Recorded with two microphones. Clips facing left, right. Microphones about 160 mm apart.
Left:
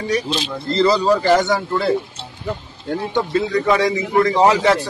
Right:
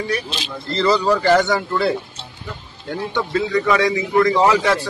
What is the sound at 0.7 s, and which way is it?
Speech, 35° left (ahead or behind).